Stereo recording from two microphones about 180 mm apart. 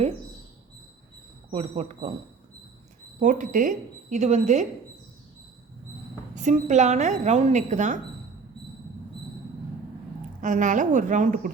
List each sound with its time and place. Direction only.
1.5 s a woman's voice: 35° right (ahead or behind)
3.2 s a woman's voice: 45° right (ahead or behind)
6.3 s a woman's voice: 40° right (ahead or behind)
10.4 s a woman's voice: 45° right (ahead or behind)